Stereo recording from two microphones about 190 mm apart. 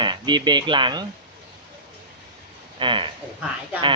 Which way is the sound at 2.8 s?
25° right (ahead or behind).